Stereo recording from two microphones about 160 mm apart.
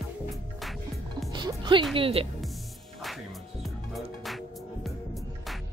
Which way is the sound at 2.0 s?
35° right (ahead or behind).